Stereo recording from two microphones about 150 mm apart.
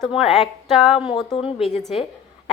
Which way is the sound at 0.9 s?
35° left (ahead or behind).